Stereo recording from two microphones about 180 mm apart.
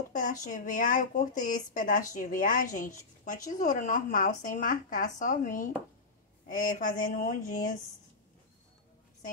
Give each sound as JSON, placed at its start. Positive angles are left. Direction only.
{"t": 0.1, "sound": "speech", "side_deg": 45}